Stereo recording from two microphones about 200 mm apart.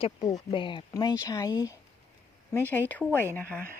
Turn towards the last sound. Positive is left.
turn(degrees=10)  # may be behind; listen again after turning